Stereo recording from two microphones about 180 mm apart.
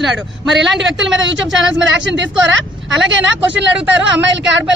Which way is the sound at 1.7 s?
80° right.